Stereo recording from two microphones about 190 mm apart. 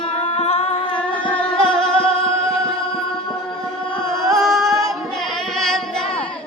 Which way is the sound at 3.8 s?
25° left (ahead or behind).